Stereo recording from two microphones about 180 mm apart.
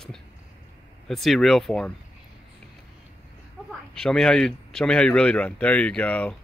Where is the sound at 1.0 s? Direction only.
Centre (ahead or behind).